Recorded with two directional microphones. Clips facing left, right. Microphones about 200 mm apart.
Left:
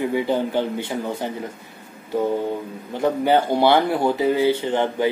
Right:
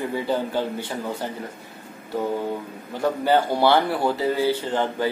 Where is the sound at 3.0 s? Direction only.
20° left (ahead or behind).